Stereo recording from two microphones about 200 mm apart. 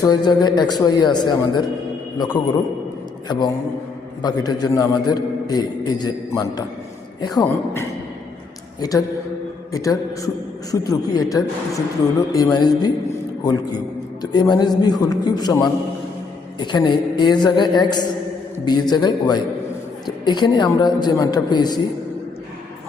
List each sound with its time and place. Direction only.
0.0 s a man's voice: 20° left (ahead or behind)